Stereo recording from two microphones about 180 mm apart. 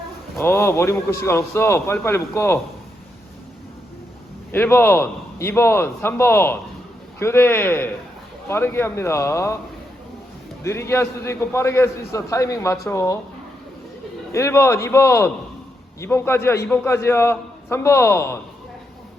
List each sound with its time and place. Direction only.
0.3 s a man's voice: 15° left (ahead or behind)
4.5 s a man's voice: 10° left (ahead or behind)
10.6 s a man's voice: 15° left (ahead or behind)
14.3 s a man's voice: 15° left (ahead or behind)